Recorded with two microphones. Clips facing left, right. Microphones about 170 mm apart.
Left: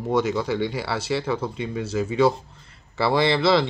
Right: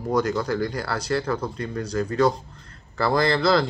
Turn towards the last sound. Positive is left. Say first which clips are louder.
# left 1 dB
turn(degrees=5)  # may be behind; listen again after turning